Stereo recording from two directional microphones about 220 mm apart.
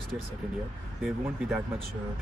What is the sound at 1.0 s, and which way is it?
Speech, centre (ahead or behind).